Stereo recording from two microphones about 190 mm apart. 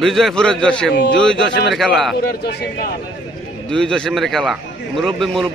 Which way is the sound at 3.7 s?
5° left (ahead or behind).